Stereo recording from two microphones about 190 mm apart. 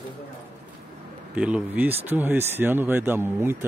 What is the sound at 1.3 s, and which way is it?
Speech, 5° right (ahead or behind).